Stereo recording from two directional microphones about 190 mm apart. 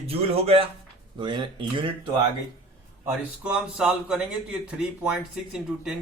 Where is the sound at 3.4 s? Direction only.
5° right (ahead or behind).